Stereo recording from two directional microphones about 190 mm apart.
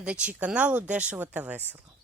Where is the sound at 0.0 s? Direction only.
5° right (ahead or behind).